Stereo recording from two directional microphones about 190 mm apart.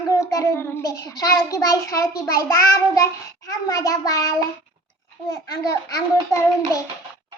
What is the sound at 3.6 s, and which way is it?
A child's voice, 20° left (ahead or behind).